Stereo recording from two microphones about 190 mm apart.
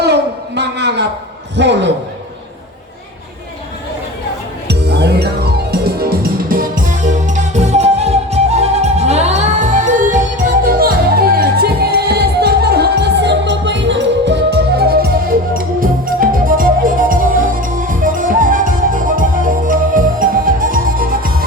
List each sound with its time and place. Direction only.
0.0 s a sound: 60° right (ahead or behind)
1.5 s speech: 65° right (ahead or behind)
4.7 s music: 60° right (ahead or behind)